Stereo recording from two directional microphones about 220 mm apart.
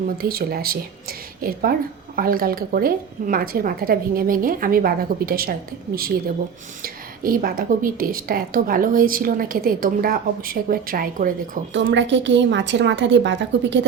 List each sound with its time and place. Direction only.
0.2 s a woman's voice: 45° right (ahead or behind)
11.7 s a woman's voice: 55° right (ahead or behind)